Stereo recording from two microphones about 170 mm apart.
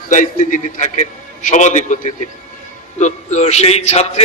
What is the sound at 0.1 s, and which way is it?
A man's voice, 50° left (ahead or behind).